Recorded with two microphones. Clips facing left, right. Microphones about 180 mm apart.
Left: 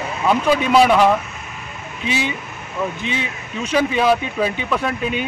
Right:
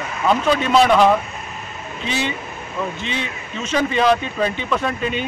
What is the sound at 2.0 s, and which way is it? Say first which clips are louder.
Speech: left 1 dB; 10° left (ahead or behind).